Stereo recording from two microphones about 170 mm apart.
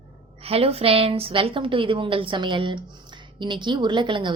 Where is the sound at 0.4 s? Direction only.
35° right (ahead or behind).